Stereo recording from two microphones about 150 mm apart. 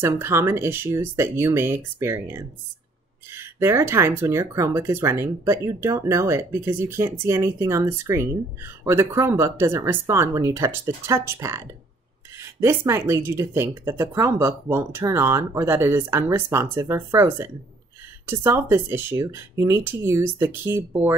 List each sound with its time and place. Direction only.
0.0 s speech: 15° right (ahead or behind)